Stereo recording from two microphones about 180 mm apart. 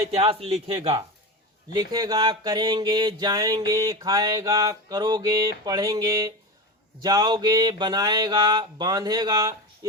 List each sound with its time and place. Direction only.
0.2 s a man's voice: 30° right (ahead or behind)
1.7 s mantra: 20° right (ahead or behind)